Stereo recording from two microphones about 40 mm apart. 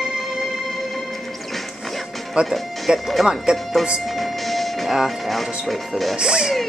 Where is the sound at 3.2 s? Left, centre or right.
Centre.